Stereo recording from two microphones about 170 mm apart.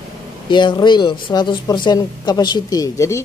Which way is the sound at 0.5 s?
25° left (ahead or behind).